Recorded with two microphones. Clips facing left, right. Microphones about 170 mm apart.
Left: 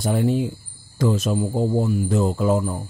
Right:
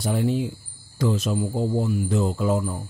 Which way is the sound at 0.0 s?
50° left (ahead or behind).